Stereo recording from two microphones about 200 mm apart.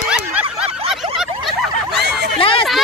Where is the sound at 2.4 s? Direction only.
25° left (ahead or behind).